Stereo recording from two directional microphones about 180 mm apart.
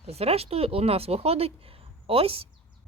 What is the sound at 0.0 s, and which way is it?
Speech, 35° right (ahead or behind).